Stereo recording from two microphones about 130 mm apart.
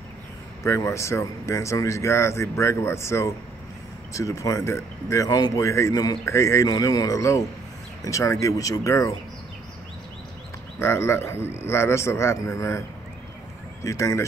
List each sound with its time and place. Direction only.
0.7 s speech: 20° left (ahead or behind)
10.8 s speech: 20° left (ahead or behind)
13.8 s speech: 25° left (ahead or behind)